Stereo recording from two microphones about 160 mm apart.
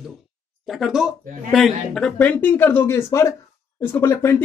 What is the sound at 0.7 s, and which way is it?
Speech, centre (ahead or behind).